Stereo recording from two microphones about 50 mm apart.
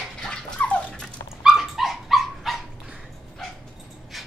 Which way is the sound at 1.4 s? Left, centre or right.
Centre.